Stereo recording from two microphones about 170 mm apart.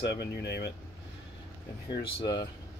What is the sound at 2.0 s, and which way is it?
Speech, 25° left (ahead or behind).